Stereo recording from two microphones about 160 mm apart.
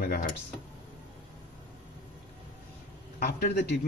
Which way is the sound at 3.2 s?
70° left (ahead or behind).